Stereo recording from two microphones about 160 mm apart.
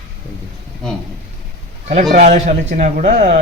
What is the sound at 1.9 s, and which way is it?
Speech, 50° right (ahead or behind).